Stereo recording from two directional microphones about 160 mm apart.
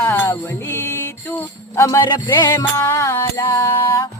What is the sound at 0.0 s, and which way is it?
Music, 15° left (ahead or behind).